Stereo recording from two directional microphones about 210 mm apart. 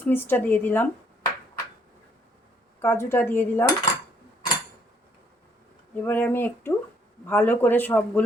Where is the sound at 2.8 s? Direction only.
10° left (ahead or behind).